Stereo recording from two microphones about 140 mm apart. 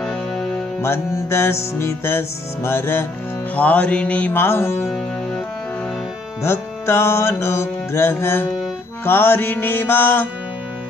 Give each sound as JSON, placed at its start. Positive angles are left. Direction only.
{"t": 0.0, "sound": "music", "side_deg": 5}
{"t": 0.7, "sound": "music", "side_deg": 20}
{"t": 4.8, "sound": "music", "side_deg": 5}
{"t": 6.4, "sound": "music", "side_deg": 20}